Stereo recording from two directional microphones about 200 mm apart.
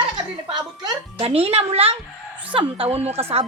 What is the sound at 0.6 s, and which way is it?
A woman's voice, 25° right (ahead or behind).